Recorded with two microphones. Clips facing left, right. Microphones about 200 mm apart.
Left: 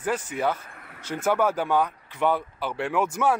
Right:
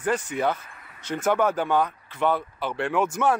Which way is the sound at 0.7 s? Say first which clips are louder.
Left 3 dB; 55° left (ahead or behind).